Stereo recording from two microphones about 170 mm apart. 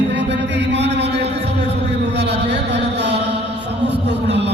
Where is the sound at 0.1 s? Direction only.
90° right.